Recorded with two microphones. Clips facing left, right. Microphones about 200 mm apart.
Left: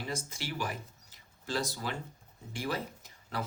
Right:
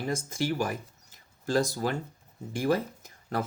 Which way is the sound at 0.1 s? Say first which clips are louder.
Right 12 dB; 45° right (ahead or behind).